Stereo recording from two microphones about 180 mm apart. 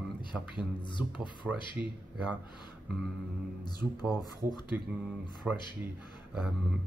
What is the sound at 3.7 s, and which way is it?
Speech, 20° left (ahead or behind).